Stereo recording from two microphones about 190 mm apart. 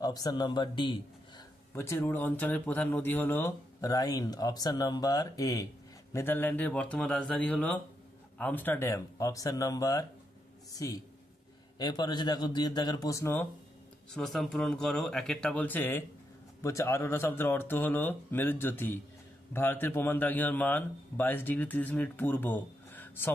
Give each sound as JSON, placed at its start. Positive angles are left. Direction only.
{"t": 0.0, "sound": "a man's voice", "side_deg": 20}
{"t": 1.7, "sound": "a man's voice", "side_deg": 15}